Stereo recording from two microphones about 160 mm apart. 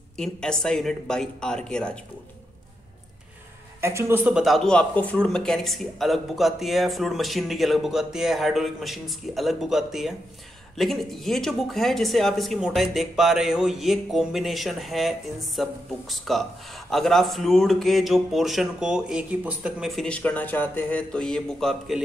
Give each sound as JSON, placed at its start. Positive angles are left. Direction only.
{"t": 0.2, "sound": "speech", "side_deg": 5}
{"t": 3.8, "sound": "speech", "side_deg": -15}